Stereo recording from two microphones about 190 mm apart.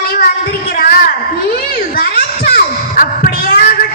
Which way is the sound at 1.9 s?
50° left (ahead or behind).